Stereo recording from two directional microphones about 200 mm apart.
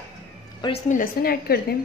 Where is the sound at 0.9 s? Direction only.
45° left (ahead or behind).